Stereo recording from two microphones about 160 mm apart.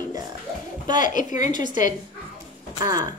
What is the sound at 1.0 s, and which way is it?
Speech, 55° left (ahead or behind).